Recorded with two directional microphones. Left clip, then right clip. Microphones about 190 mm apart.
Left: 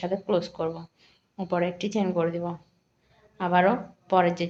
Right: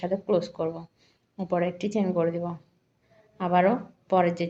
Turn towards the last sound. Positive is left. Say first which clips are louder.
# left 1 dB
turn(degrees=-15)  # may be behind; listen again after turning